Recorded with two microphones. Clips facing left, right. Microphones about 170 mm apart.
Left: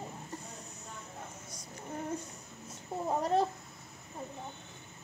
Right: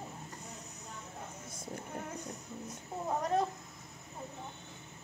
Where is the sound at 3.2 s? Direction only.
30° left (ahead or behind).